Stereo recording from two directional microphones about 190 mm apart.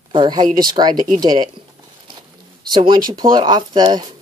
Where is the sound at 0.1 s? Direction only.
25° right (ahead or behind).